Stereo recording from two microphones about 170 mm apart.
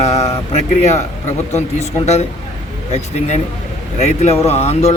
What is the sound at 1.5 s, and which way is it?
Speech, 40° left (ahead or behind).